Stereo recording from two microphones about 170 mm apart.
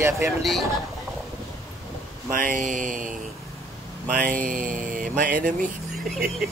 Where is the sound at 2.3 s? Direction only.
55° right (ahead or behind).